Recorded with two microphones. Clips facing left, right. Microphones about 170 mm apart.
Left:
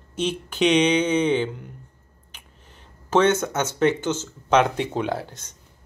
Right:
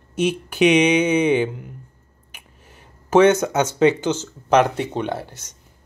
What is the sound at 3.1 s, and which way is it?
Speech, 10° right (ahead or behind).